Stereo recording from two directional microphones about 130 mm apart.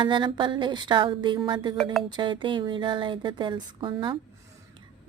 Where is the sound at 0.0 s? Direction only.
40° right (ahead or behind).